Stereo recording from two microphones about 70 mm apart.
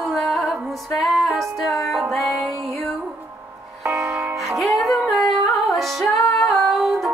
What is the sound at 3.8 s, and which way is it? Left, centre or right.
Music, right.